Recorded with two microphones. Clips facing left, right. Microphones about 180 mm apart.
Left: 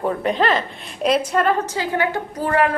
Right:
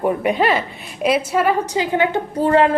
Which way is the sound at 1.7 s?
20° right (ahead or behind).